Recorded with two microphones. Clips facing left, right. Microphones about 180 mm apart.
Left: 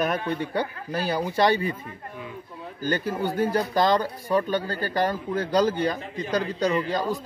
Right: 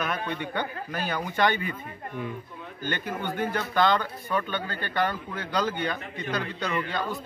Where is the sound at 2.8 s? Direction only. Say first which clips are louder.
Left 6 dB; 35° left (ahead or behind).